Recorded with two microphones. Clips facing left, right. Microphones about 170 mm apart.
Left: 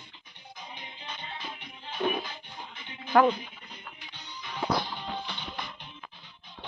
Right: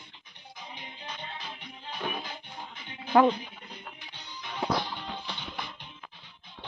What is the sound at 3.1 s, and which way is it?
Speech, 25° right (ahead or behind).